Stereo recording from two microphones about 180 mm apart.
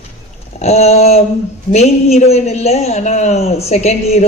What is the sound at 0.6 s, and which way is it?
Speech, 35° left (ahead or behind).